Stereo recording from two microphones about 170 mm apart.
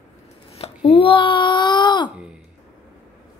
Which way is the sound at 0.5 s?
35° left (ahead or behind).